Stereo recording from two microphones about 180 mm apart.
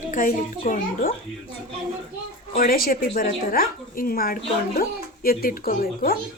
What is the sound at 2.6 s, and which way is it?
Speech, 50° left (ahead or behind).